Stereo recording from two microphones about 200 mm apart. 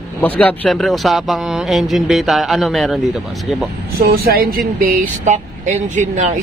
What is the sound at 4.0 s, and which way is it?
Speech, 50° right (ahead or behind).